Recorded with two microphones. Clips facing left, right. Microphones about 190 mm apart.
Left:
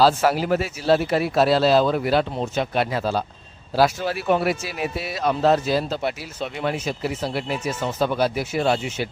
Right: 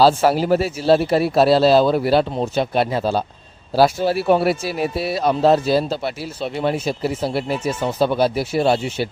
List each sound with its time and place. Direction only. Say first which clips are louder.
0.0 s speech: right 3 dB; 30° right (ahead or behind)